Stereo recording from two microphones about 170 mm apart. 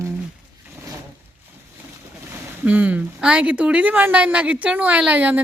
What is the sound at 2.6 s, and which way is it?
A woman's voice, 10° right (ahead or behind).